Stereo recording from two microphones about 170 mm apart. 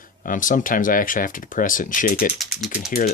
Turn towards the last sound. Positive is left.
turn(degrees=60)  # may be behind; listen again after turning